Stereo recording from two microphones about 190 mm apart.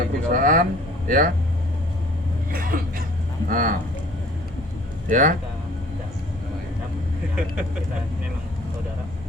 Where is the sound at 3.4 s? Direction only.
45° right (ahead or behind).